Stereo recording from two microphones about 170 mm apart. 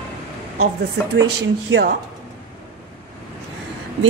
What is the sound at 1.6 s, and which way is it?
Speech, 90° right.